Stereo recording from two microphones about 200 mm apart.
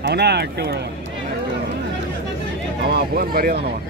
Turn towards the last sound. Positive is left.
turn(degrees=-45)  # may be behind; listen again after turning